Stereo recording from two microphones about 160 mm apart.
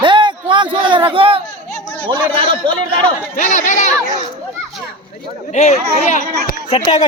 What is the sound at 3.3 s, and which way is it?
Speech, 50° left (ahead or behind).